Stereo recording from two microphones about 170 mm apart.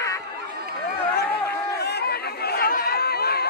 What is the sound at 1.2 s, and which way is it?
Chatter, 70° left (ahead or behind).